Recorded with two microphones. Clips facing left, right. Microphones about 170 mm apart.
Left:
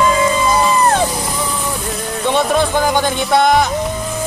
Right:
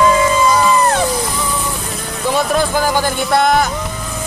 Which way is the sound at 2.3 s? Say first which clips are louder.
Left 1 dB; centre (ahead or behind).